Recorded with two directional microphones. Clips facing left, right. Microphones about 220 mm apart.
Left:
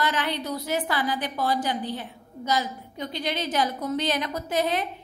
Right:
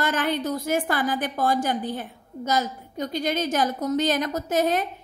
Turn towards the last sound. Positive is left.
turn(degrees=-45)  # may be behind; listen again after turning